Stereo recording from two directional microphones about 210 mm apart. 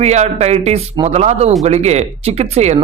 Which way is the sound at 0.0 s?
30° right (ahead or behind).